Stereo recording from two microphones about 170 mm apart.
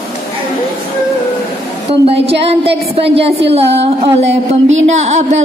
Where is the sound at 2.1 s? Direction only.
35° right (ahead or behind).